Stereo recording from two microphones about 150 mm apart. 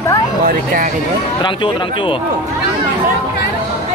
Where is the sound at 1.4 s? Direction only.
35° left (ahead or behind).